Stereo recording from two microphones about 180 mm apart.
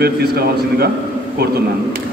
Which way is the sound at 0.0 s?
60° right (ahead or behind).